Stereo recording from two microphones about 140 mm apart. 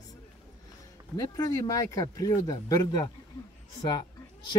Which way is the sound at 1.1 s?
25° left (ahead or behind).